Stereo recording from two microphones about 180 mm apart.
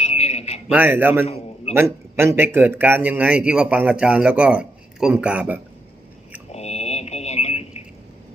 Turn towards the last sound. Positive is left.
turn(degrees=35)  # may be behind; listen again after turning